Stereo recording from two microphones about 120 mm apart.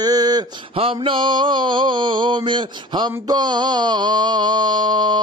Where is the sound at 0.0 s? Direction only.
35° right (ahead or behind).